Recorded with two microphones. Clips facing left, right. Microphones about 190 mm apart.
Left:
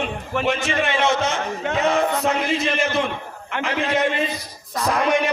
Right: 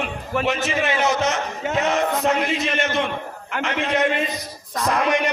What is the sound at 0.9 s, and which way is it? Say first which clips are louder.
Speech: even; 25° left (ahead or behind).